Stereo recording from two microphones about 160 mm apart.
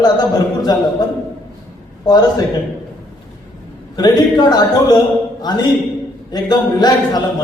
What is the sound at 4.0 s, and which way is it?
A man's voice, 25° left (ahead or behind).